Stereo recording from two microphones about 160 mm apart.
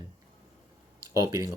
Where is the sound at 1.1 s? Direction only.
20° right (ahead or behind).